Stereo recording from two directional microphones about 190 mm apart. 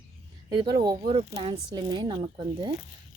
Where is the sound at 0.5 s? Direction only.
20° right (ahead or behind).